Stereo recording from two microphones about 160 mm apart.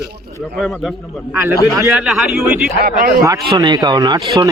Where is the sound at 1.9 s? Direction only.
5° right (ahead or behind).